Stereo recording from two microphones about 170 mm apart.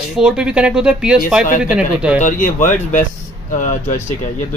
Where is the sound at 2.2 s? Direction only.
50° left (ahead or behind).